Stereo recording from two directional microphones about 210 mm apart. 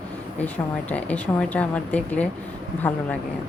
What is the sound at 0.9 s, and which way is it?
Speech, 5° left (ahead or behind).